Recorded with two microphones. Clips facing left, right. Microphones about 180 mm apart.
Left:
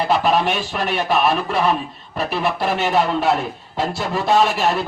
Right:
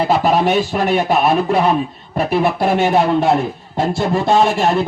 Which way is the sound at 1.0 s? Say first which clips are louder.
Right 4 dB; 45° right (ahead or behind).